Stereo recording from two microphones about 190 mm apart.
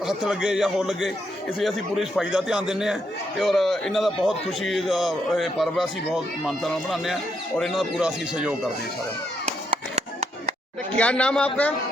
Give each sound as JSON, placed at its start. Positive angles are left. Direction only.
{"t": 0.1, "sound": "a man's voice", "side_deg": -5}
{"t": 9.6, "sound": "music", "side_deg": -35}
{"t": 10.9, "sound": "a man's voice", "side_deg": 5}